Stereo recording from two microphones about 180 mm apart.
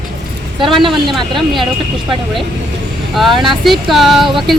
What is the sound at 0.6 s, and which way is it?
Speech, 25° right (ahead or behind).